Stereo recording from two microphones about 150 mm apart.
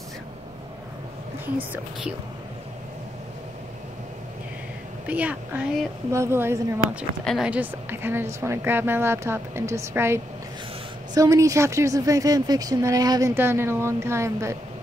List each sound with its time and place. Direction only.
1.4 s a woman's voice: 10° right (ahead or behind)
5.0 s a woman's voice: 10° right (ahead or behind)
7.2 s a woman's voice: 5° right (ahead or behind); by 14.6 s 20° right (ahead or behind)